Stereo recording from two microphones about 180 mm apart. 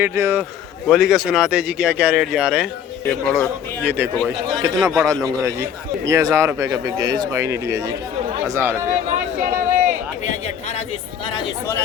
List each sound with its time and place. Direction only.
0.0 s speech: 15° right (ahead or behind)
0.9 s speech: centre (ahead or behind)
3.8 s speech: 10° right (ahead or behind)
5.0 s speech: 20° right (ahead or behind)
9.4 s a sound: 45° right (ahead or behind)
10.2 s a sound: 35° left (ahead or behind)